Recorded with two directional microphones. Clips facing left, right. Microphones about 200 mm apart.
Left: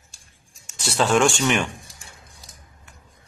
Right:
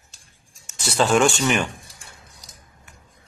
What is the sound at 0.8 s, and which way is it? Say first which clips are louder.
Speech: right 1 dB; centre (ahead or behind).